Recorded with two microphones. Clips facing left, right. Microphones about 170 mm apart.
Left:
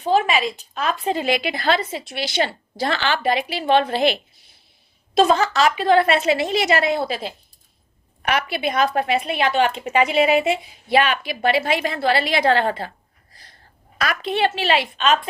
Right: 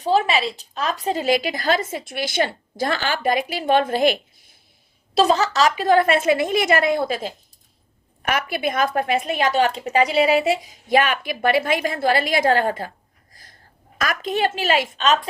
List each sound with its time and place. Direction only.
0.0 s a woman's voice: 35° right (ahead or behind)
5.1 s a woman's voice: 35° right (ahead or behind)
14.0 s a woman's voice: 45° right (ahead or behind)